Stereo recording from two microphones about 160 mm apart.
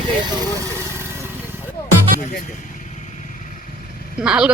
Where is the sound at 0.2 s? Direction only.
25° right (ahead or behind).